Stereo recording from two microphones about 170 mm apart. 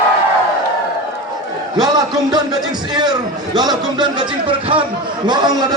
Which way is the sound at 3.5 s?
25° right (ahead or behind).